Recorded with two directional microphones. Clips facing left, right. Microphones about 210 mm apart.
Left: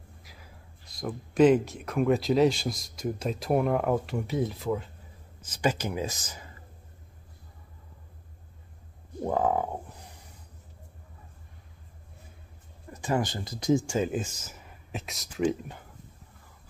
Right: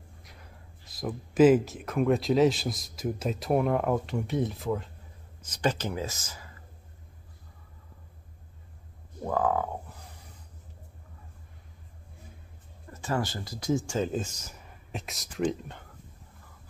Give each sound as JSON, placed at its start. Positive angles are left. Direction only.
{"t": 0.2, "sound": "speech", "side_deg": 0}
{"t": 9.2, "sound": "frog", "side_deg": 20}
{"t": 12.9, "sound": "speech", "side_deg": 15}